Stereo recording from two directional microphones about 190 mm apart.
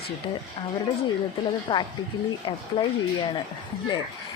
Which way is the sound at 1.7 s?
25° left (ahead or behind).